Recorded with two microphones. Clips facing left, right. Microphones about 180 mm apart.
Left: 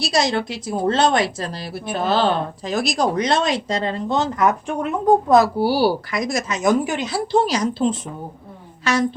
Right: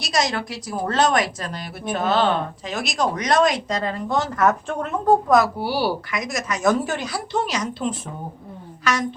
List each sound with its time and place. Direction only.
0.0 s a woman's voice: 30° left (ahead or behind); by 5.1 s 15° left (ahead or behind)
5.3 s a woman's voice: 30° left (ahead or behind)
6.6 s speech: 15° left (ahead or behind)
7.1 s a woman's voice: 35° left (ahead or behind)